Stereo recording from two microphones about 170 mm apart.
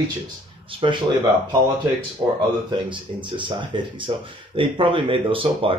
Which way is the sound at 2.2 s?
25° right (ahead or behind).